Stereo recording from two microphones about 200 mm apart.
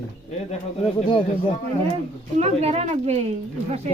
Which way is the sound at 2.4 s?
30° right (ahead or behind).